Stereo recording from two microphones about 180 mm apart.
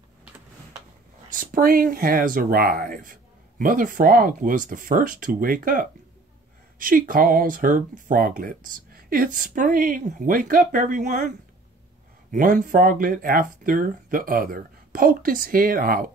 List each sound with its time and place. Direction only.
1.3 s speech: 50° right (ahead or behind)